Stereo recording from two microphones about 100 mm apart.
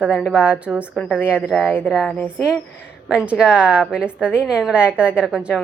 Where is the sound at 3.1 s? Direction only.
10° right (ahead or behind).